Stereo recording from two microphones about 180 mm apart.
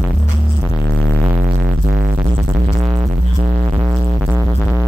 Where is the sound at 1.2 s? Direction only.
35° right (ahead or behind).